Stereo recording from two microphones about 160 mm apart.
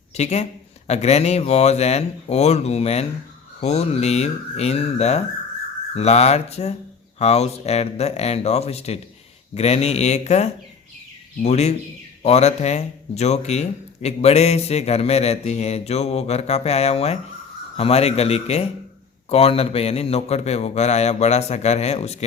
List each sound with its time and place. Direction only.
0.1 s speech: 45° left (ahead or behind)